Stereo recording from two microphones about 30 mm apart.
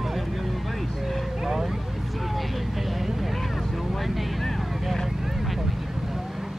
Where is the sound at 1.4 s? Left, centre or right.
Centre.